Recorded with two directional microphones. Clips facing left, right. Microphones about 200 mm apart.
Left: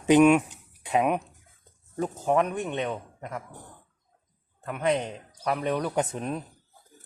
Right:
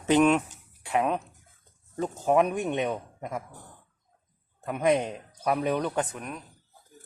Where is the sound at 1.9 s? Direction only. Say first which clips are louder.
Right 1 dB; centre (ahead or behind).